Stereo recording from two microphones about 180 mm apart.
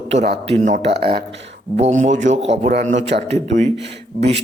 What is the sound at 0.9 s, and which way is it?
Speech, 65° right (ahead or behind).